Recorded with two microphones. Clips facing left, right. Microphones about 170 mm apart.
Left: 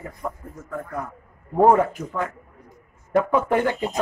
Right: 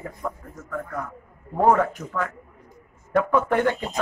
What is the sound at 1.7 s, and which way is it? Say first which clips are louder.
A man's voice: left 2 dB; 15° left (ahead or behind).